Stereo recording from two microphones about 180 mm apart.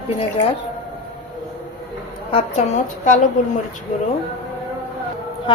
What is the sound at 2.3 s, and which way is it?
Speech, 35° left (ahead or behind).